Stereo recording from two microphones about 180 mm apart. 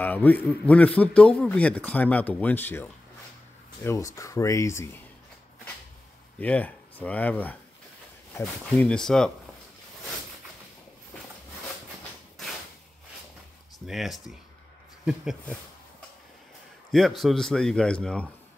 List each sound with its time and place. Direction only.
0.0 s a man's voice: 10° left (ahead or behind)
6.4 s a man's voice: 10° left (ahead or behind)
13.8 s a man's voice: centre (ahead or behind)
16.9 s a man's voice: centre (ahead or behind)